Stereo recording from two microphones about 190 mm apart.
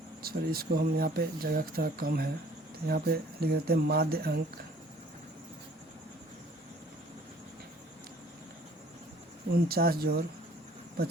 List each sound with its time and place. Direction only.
0.2 s speech: 55° right (ahead or behind)
9.5 s speech: 55° right (ahead or behind)